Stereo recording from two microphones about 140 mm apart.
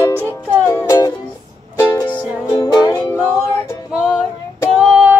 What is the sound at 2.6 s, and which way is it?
Music, 25° left (ahead or behind).